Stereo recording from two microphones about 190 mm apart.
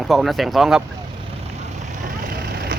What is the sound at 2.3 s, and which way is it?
Vehicle, 55° right (ahead or behind).